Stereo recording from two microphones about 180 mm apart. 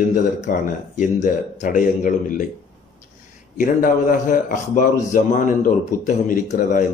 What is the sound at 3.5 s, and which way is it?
A man's voice, 50° left (ahead or behind).